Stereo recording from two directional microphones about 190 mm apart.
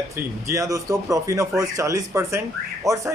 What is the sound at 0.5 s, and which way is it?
Speech, 15° right (ahead or behind).